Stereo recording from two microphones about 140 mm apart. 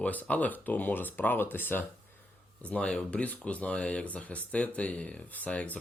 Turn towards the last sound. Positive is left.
turn(degrees=10)  # may be behind; listen again after turning